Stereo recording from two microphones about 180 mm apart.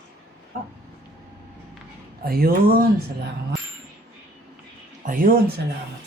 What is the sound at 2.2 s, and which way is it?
Speech, 55° right (ahead or behind).